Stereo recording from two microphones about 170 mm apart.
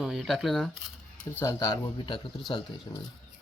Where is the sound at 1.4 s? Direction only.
20° left (ahead or behind).